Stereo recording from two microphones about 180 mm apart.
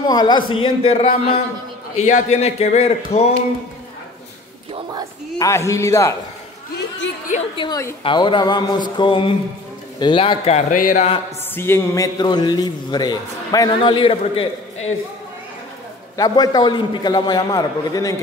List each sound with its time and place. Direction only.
0.1 s a man's voice: 25° left (ahead or behind)
5.4 s a man's voice: 15° left (ahead or behind)
7.5 s a man's voice: 25° left (ahead or behind); by 11.1 s 40° left (ahead or behind)
11.5 s a man's voice: 15° left (ahead or behind); by 15.0 s 30° left (ahead or behind)
16.2 s a man's voice: 25° left (ahead or behind)